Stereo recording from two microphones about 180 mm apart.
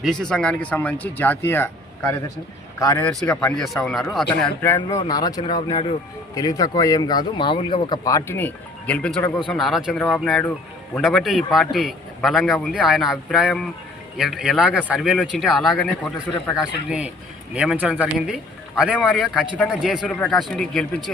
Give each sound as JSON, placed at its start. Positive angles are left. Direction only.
{"t": 0.0, "sound": "speech", "side_deg": 0}
{"t": 3.0, "sound": "a man's voice", "side_deg": 5}
{"t": 4.6, "sound": "speech", "side_deg": 10}
{"t": 5.0, "sound": "a man's voice", "side_deg": 20}
{"t": 18.9, "sound": "a man's voice", "side_deg": 5}